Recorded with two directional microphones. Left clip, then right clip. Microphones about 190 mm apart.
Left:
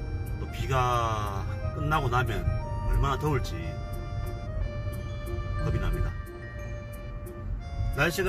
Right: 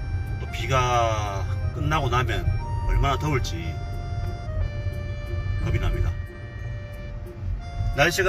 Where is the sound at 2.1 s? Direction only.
5° left (ahead or behind).